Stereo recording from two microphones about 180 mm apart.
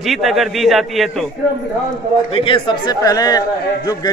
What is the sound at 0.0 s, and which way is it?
A man's voice, centre (ahead or behind).